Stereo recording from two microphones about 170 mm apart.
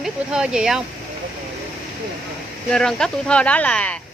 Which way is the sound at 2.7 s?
5° left (ahead or behind).